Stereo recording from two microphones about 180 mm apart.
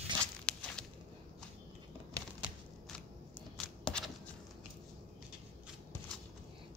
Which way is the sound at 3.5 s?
5° left (ahead or behind).